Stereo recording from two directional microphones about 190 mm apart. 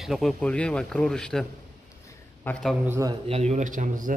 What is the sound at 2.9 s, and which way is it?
Speech, 15° right (ahead or behind).